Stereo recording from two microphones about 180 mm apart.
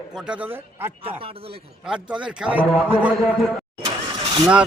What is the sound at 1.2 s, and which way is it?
Speech, 30° right (ahead or behind).